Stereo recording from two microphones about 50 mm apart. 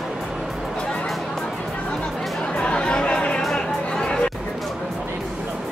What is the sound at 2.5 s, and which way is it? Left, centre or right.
Chatter, centre.